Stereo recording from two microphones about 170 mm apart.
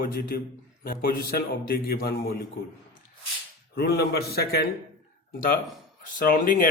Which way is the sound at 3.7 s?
70° left (ahead or behind).